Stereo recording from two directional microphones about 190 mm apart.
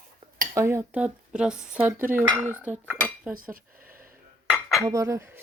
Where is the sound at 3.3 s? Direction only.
50° right (ahead or behind).